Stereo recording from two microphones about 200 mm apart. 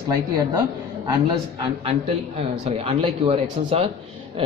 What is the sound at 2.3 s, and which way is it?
Speech, 30° right (ahead or behind).